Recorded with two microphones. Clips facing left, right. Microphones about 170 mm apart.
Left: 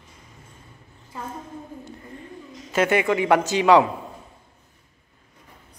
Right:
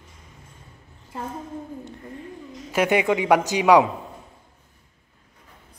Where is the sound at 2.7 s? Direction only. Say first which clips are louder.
Even; 15° right (ahead or behind).